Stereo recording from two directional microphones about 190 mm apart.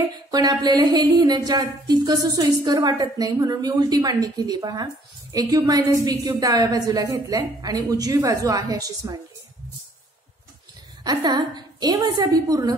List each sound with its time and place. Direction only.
0.3 s speech: 20° right (ahead or behind)
11.1 s speech: 20° right (ahead or behind)